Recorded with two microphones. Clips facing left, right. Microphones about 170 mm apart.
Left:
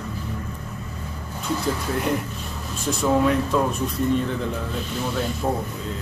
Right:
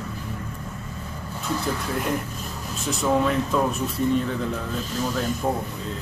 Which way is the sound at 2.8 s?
Centre (ahead or behind).